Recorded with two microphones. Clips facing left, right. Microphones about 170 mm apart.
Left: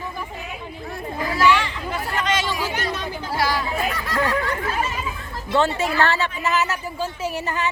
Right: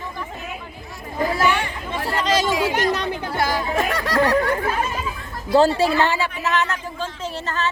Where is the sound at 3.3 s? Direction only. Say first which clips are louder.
Even; 50° right (ahead or behind).